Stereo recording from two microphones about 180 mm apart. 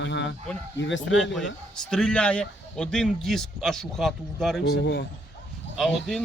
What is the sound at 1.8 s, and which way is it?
Speech, centre (ahead or behind).